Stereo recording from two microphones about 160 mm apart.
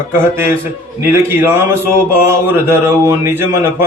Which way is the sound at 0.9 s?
15° right (ahead or behind).